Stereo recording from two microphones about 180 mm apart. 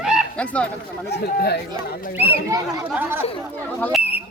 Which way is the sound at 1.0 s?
65° left (ahead or behind).